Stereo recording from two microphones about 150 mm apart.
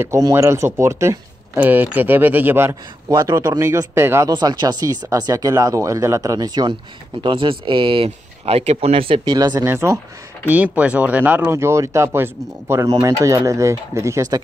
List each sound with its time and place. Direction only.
0.0 s speech: 20° right (ahead or behind)
4.3 s speech: 30° right (ahead or behind)